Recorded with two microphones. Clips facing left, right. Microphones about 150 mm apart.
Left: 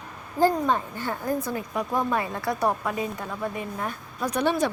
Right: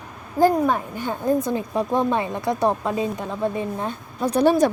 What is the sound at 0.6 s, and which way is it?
A woman's voice, 15° right (ahead or behind).